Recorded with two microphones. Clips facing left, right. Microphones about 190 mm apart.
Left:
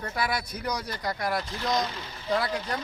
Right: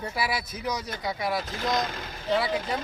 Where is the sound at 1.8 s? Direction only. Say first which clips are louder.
Right 1 dB; 50° right (ahead or behind).